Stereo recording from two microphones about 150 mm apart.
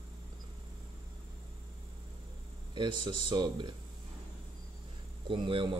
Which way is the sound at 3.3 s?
35° right (ahead or behind).